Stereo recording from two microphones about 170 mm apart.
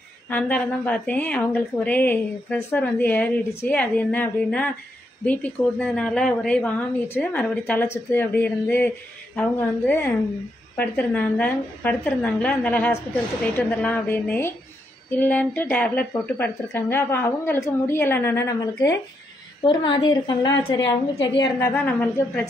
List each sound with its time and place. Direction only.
0.3 s a woman's voice: 10° left (ahead or behind)
21.5 s a woman's voice: 10° left (ahead or behind)